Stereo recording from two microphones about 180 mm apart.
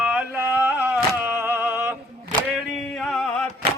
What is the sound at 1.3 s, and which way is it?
Thunk, 15° right (ahead or behind).